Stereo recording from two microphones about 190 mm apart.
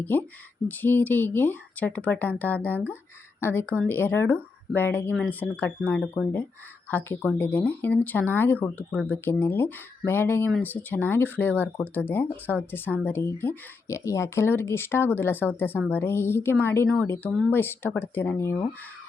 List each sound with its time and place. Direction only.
0.0 s speech: 10° left (ahead or behind)